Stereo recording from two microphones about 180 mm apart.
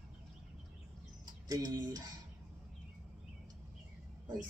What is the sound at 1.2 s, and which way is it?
Speech, 20° right (ahead or behind).